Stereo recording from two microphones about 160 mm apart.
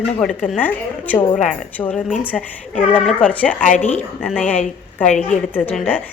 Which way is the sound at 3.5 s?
55° left (ahead or behind).